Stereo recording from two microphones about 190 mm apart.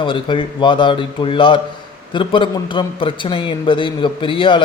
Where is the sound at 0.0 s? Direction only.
25° left (ahead or behind).